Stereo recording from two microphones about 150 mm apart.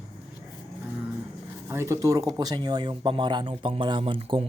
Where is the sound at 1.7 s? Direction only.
20° right (ahead or behind).